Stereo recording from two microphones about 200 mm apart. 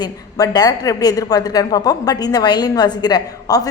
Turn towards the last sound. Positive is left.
turn(degrees=20)  # may be behind; listen again after turning